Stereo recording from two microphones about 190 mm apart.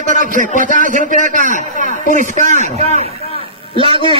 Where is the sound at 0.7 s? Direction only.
45° right (ahead or behind).